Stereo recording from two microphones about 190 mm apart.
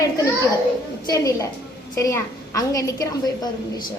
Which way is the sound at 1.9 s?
15° left (ahead or behind).